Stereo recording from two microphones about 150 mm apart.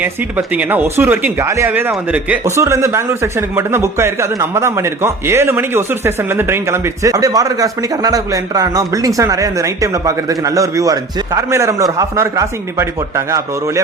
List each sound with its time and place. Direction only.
0.0 s speech: 10° right (ahead or behind)